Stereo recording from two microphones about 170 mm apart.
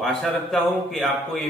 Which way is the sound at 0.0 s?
Centre (ahead or behind).